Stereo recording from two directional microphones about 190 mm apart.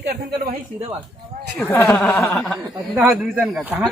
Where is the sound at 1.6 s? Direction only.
10° left (ahead or behind).